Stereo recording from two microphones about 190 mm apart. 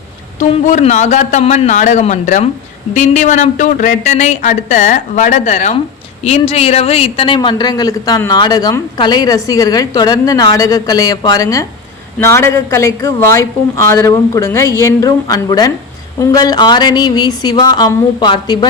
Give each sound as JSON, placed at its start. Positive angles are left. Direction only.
{"t": 0.3, "sound": "a woman's voice", "side_deg": 40}